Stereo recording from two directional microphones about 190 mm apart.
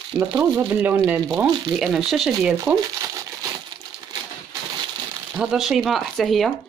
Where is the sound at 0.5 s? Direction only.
10° right (ahead or behind).